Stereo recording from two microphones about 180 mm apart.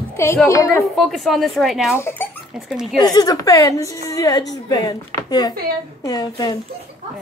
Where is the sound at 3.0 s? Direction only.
20° left (ahead or behind).